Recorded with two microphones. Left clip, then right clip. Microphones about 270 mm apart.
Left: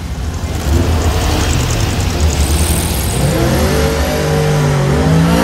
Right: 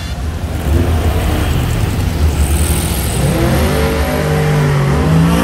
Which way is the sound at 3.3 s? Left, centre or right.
Left.